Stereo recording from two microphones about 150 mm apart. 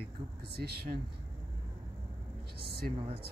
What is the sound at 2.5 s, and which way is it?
Speech, 90° right.